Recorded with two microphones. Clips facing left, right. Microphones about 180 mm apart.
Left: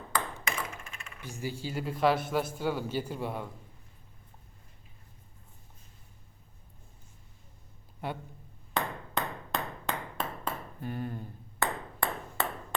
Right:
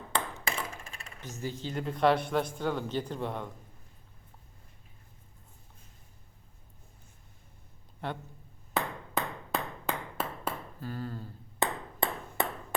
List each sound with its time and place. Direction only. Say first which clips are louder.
0.4 s coin: even; 35° right (ahead or behind)
1.2 s speech: even; 10° left (ahead or behind)
8.7 s ping: right 1 dB; 5° right (ahead or behind)
10.8 s speech: left 2 dB; 20° left (ahead or behind)
11.6 s ping: right 1 dB; 20° right (ahead or behind)